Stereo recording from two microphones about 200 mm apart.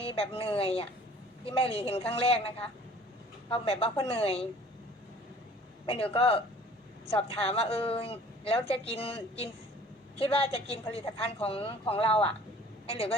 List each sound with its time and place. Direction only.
0.0 s a woman's voice: 30° left (ahead or behind)
5.8 s a woman's voice: 30° left (ahead or behind)